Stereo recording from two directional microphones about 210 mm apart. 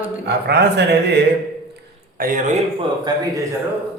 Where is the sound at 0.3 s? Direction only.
50° right (ahead or behind).